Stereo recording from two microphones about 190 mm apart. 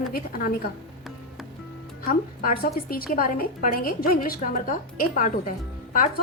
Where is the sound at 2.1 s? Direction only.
50° left (ahead or behind).